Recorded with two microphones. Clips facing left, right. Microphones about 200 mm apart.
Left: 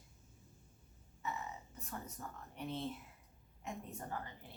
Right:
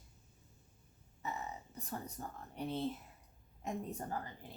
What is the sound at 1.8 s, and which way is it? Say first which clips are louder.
A woman's voice: right 3 dB; 35° right (ahead or behind).